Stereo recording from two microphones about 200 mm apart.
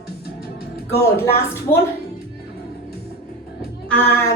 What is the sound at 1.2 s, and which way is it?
Speech, 10° left (ahead or behind).